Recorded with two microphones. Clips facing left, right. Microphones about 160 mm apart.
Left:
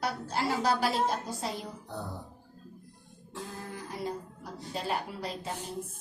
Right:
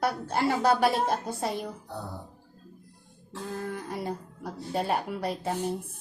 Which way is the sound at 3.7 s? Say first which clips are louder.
Right 3 dB; 60° right (ahead or behind).